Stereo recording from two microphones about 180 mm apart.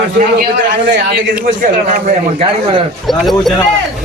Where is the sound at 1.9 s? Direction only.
40° right (ahead or behind).